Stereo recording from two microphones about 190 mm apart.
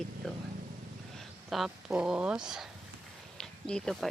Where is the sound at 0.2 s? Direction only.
Centre (ahead or behind).